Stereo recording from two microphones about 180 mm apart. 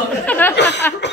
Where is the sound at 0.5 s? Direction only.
70° left (ahead or behind).